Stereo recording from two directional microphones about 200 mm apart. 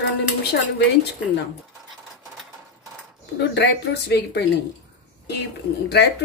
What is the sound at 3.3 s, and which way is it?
A woman's voice, 60° left (ahead or behind).